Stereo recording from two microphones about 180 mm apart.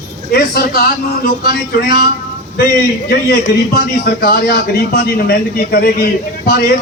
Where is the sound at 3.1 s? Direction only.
55° left (ahead or behind).